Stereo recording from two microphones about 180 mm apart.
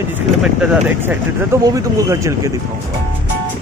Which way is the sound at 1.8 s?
15° right (ahead or behind).